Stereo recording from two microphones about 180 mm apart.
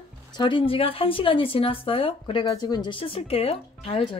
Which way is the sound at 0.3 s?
25° left (ahead or behind).